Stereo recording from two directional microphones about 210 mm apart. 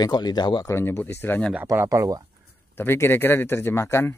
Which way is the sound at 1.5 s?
10° right (ahead or behind).